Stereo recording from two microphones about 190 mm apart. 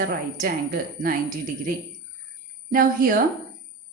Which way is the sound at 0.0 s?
50° right (ahead or behind).